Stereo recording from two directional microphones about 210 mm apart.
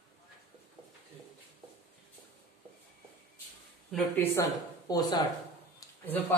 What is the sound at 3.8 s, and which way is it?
Speech, 5° left (ahead or behind).